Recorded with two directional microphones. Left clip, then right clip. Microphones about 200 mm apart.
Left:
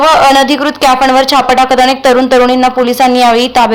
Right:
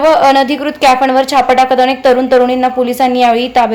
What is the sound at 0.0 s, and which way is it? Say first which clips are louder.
Speech: left 2 dB; 10° left (ahead or behind).